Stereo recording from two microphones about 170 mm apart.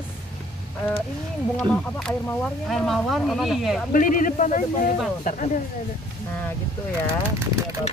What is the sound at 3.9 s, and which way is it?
Speech, 50° left (ahead or behind).